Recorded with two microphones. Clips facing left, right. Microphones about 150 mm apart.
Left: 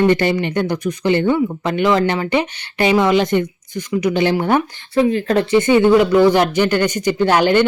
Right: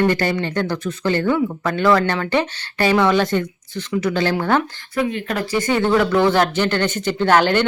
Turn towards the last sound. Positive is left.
turn(degrees=10)  # may be behind; listen again after turning